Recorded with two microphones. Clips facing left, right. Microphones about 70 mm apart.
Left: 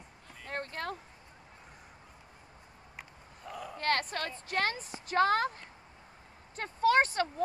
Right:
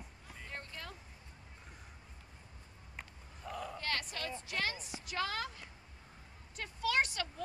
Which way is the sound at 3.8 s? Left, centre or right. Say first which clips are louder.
Left 12 dB; left.